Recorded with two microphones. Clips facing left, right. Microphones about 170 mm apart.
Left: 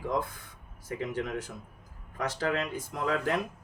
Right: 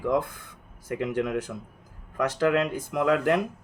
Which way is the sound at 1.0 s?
70° right (ahead or behind).